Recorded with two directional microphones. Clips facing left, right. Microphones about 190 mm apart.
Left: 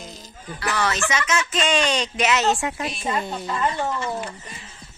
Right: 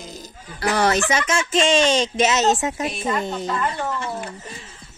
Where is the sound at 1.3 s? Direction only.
30° right (ahead or behind).